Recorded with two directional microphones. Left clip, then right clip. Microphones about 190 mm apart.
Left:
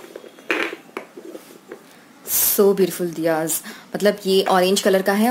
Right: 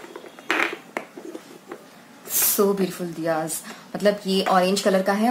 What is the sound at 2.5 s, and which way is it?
Speech, 45° left (ahead or behind).